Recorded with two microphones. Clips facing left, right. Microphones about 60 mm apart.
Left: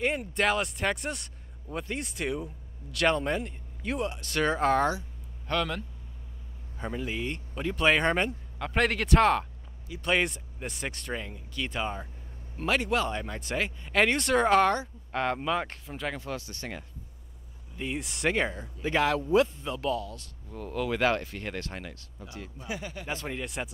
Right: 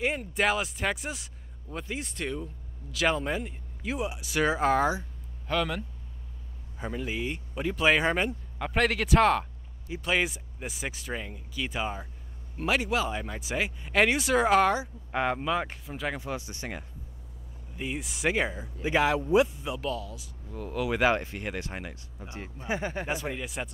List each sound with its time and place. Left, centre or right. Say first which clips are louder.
0.3 s speech: even; centre
16.2 s speech: right 1 dB; centre
17.7 s speech: left 1 dB; centre
20.9 s speech: right 2 dB; centre
22.2 s speech: right 2 dB; right
23.0 s speech: right 3 dB; centre
23.3 s speech: even; centre